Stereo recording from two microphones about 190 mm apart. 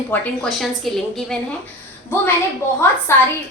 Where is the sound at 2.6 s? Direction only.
15° left (ahead or behind).